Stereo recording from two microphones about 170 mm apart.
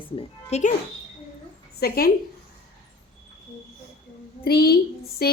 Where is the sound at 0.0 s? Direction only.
30° left (ahead or behind).